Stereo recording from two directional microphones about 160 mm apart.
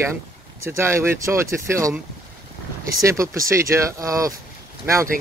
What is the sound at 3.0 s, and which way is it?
Speech, 20° right (ahead or behind).